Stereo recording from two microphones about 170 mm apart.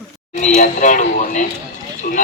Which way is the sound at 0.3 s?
45° left (ahead or behind).